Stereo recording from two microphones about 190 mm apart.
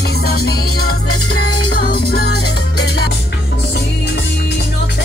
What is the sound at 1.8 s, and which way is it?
Music, 55° left (ahead or behind).